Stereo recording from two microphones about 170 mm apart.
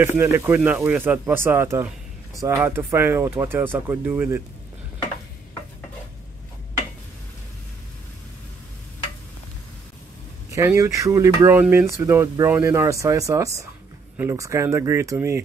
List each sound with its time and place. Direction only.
0.0 s speech: 15° right (ahead or behind)
10.5 s speech: 15° right (ahead or behind)